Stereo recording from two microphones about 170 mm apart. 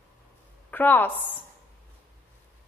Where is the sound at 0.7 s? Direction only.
10° left (ahead or behind).